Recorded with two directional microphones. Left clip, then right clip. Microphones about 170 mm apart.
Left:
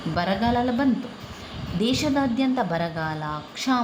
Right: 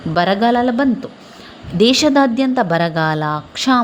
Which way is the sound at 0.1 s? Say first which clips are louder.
Right 9 dB; 50° right (ahead or behind).